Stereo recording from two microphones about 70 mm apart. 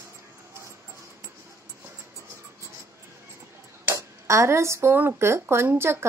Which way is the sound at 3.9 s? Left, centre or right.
Right.